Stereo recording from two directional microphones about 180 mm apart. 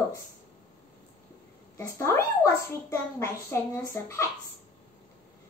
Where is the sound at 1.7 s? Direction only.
15° left (ahead or behind).